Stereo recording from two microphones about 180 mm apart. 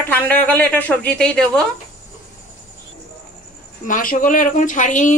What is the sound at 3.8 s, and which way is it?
Speech, 50° left (ahead or behind).